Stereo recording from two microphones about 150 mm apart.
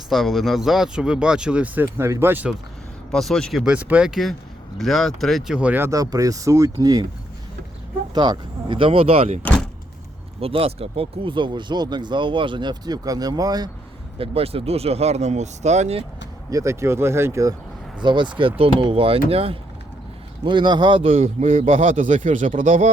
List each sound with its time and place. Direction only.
0.1 s speech: centre (ahead or behind)
3.1 s speech: 5° left (ahead or behind); by 6.7 s 20° right (ahead or behind)
8.1 s speech: 30° right (ahead or behind)
10.4 s speech: 40° right (ahead or behind)
14.2 s speech: 40° right (ahead or behind)
16.5 s speech: 20° right (ahead or behind)
18.0 s speech: 30° right (ahead or behind)
21.2 s speech: 55° right (ahead or behind)